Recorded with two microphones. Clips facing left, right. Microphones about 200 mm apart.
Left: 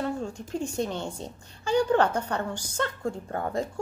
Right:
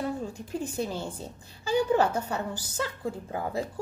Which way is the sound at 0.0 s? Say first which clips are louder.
Left 1 dB; 5° right (ahead or behind).